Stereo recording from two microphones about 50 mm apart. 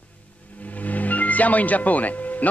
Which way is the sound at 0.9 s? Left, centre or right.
Left.